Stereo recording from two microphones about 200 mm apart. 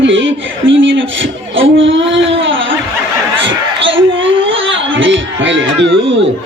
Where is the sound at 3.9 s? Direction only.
75° right (ahead or behind).